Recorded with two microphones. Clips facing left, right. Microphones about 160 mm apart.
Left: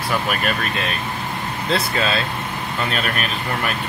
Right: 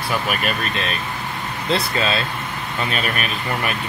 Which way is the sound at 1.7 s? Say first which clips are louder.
Even; centre (ahead or behind).